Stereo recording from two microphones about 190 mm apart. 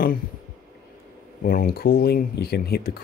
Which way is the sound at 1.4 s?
50° left (ahead or behind).